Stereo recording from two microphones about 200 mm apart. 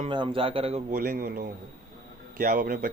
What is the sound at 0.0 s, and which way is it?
Speech, 25° right (ahead or behind).